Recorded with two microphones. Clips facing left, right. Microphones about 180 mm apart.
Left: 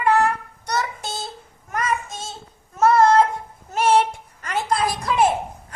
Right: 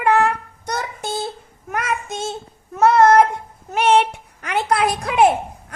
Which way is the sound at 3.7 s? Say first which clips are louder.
Right 2 dB; 65° right (ahead or behind).